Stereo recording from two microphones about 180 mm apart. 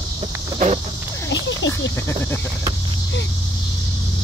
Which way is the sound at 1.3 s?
90° left.